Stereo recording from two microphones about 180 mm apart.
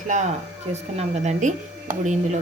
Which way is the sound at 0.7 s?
40° right (ahead or behind).